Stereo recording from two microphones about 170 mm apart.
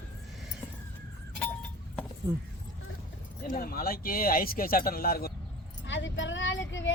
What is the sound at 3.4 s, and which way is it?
A man's voice, 55° left (ahead or behind).